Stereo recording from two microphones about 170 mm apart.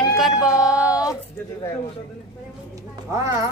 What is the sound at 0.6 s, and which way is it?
Child singing, 5° right (ahead or behind).